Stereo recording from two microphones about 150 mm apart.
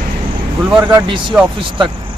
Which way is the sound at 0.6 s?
10° right (ahead or behind).